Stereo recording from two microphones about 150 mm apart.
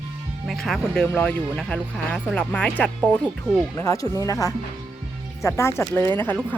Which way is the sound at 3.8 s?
20° left (ahead or behind).